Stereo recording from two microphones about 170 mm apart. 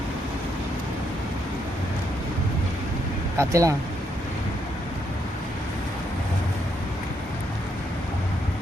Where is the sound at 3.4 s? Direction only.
20° right (ahead or behind).